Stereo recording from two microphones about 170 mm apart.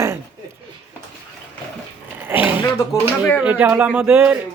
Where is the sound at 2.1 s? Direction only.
10° right (ahead or behind).